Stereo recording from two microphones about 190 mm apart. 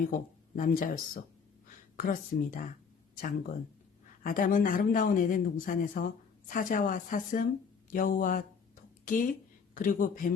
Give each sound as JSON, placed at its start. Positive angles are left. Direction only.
{"t": 0.1, "sound": "speech", "side_deg": 45}